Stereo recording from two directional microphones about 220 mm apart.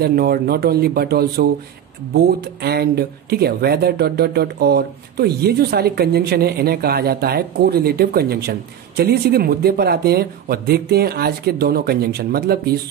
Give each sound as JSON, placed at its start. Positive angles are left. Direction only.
{"t": 0.0, "sound": "speech", "side_deg": -45}